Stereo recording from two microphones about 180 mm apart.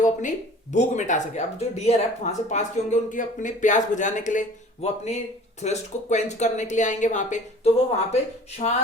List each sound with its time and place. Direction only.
0.0 s speech: 45° left (ahead or behind)